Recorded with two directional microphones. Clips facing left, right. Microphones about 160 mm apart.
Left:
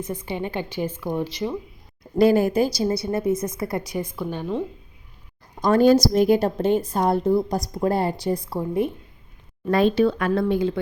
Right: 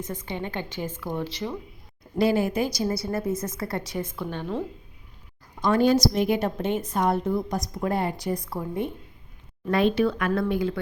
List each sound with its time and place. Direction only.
0.1 s speech: 15° left (ahead or behind)
2.1 s speech: 45° left (ahead or behind)
2.7 s speech: 25° left (ahead or behind); by 4.5 s 5° left (ahead or behind)
5.5 s a woman's voice: 40° left (ahead or behind); by 10.8 s 25° left (ahead or behind)